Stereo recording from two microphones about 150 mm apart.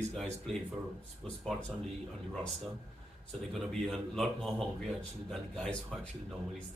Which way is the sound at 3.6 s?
Centre (ahead or behind).